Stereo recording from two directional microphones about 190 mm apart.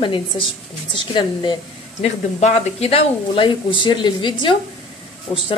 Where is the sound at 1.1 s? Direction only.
25° left (ahead or behind).